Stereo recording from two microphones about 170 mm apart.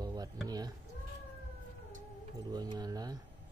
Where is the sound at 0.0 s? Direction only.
20° right (ahead or behind).